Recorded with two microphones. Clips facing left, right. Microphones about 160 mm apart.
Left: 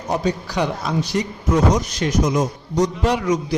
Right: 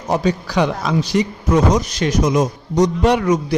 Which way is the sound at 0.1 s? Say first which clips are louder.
Right 4 dB; 90° right.